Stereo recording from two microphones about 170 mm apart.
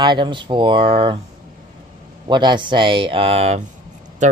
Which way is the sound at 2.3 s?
25° right (ahead or behind).